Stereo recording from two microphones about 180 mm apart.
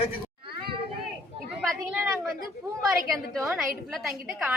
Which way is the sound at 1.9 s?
5° right (ahead or behind).